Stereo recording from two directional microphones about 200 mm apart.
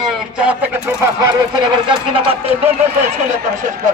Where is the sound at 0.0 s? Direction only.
Centre (ahead or behind).